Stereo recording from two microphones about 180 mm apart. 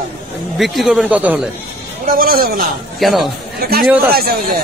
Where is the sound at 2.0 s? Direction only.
55° right (ahead or behind).